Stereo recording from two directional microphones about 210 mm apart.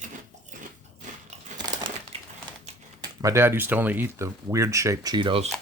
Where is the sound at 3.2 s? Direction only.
15° right (ahead or behind).